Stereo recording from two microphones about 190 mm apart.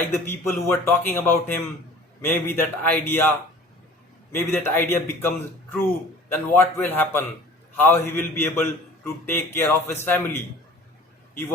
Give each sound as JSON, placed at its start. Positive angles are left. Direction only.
{"t": 0.0, "sound": "a man's voice", "side_deg": 10}
{"t": 6.5, "sound": "a man's voice", "side_deg": 10}